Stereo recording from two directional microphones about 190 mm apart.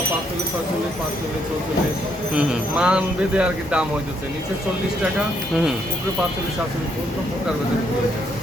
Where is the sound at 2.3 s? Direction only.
5° right (ahead or behind).